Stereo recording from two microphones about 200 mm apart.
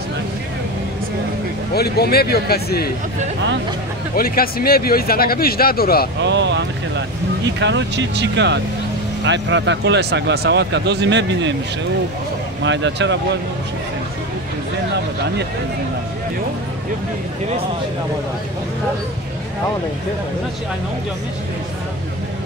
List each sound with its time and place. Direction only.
1.8 s speech: 50° left (ahead or behind)
4.1 s speech: 45° left (ahead or behind)
6.2 s speech: 60° right (ahead or behind)
12.6 s speech: 65° right (ahead or behind)